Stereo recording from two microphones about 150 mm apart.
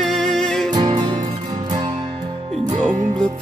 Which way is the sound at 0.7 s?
30° right (ahead or behind).